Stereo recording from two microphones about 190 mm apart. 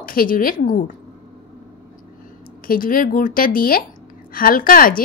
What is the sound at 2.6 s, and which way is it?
A woman's voice, 50° left (ahead or behind).